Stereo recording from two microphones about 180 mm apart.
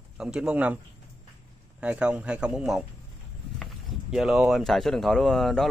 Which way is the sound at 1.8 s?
5° right (ahead or behind).